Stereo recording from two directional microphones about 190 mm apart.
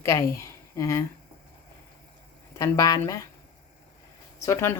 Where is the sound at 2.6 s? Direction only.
15° left (ahead or behind).